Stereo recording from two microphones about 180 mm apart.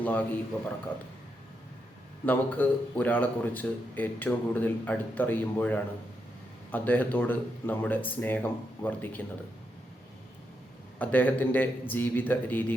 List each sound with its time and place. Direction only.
0.0 s speech: 10° left (ahead or behind)
2.2 s speech: 10° left (ahead or behind)
11.0 s speech: 10° left (ahead or behind)